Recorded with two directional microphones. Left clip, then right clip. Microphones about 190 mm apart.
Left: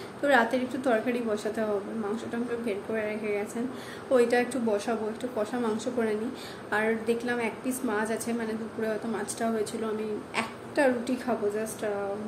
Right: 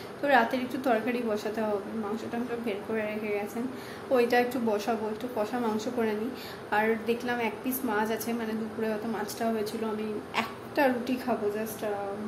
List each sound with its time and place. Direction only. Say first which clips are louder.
0.2 s a woman's voice: left 1 dB; 5° left (ahead or behind)